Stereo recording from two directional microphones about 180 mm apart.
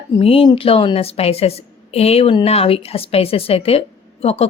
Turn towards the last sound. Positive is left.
turn(degrees=35)  # may be behind; listen again after turning